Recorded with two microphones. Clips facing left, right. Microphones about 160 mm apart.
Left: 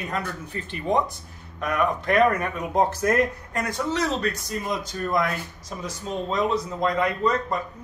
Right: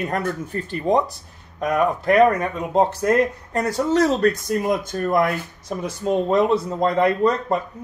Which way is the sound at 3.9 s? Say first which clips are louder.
Right 9 dB; 45° right (ahead or behind).